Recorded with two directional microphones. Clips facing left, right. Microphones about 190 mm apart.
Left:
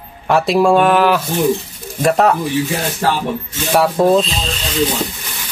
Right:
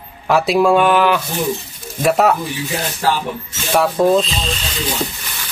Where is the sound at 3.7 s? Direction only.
Centre (ahead or behind).